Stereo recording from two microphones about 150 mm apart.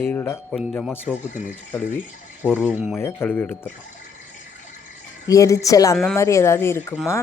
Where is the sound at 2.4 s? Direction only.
10° left (ahead or behind).